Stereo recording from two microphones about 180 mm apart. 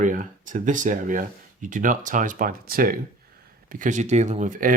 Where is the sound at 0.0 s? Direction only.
45° right (ahead or behind).